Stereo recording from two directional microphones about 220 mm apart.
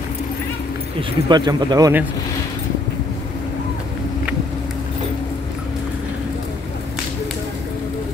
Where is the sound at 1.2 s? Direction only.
20° right (ahead or behind).